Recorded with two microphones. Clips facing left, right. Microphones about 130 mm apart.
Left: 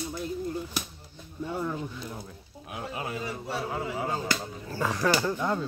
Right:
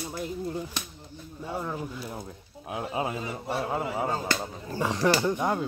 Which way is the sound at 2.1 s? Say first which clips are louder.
Right 3 dB; 25° right (ahead or behind).